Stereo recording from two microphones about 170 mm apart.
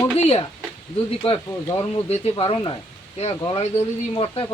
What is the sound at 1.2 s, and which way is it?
Speech, 35° left (ahead or behind).